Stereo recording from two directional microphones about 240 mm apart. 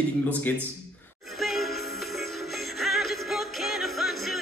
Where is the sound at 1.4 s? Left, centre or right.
Centre.